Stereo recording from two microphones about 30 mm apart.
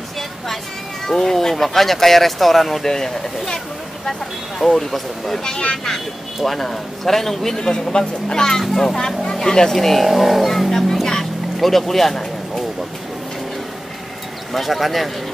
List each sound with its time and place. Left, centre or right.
1.0 s speech: centre
2.8 s a sound: centre
4.6 s speech: centre
6.4 s speech: centre
7.9 s speech: left
9.7 s speech: centre
10.0 s speech: centre
10.7 s speech: centre
14.5 s speech: centre